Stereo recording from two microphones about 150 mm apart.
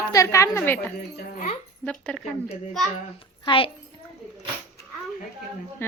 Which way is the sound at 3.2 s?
35° left (ahead or behind).